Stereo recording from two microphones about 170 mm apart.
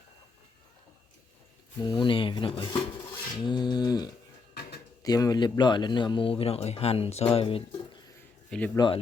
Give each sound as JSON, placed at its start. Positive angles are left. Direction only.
{"t": 1.8, "sound": "a man's voice", "side_deg": 25}
{"t": 3.4, "sound": "a sound", "side_deg": 25}
{"t": 5.0, "sound": "a man's voice", "side_deg": 20}
{"t": 8.4, "sound": "speech", "side_deg": 5}
{"t": 8.7, "sound": "a man's voice", "side_deg": 25}